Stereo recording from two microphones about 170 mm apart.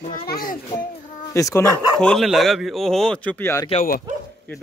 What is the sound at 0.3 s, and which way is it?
Speech, 60° left (ahead or behind).